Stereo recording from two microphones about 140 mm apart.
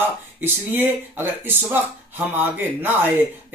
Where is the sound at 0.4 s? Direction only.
15° right (ahead or behind).